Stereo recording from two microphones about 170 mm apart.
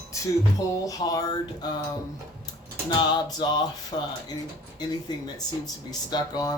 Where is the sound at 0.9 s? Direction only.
20° left (ahead or behind).